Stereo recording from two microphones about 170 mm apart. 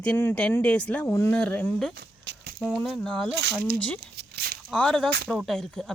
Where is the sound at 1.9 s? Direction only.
75° right (ahead or behind).